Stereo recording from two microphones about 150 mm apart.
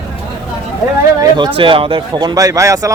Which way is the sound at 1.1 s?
30° right (ahead or behind).